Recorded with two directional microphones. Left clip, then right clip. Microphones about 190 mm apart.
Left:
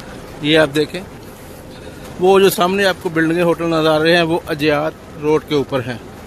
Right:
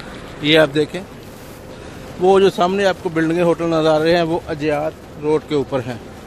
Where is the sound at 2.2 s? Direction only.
5° left (ahead or behind).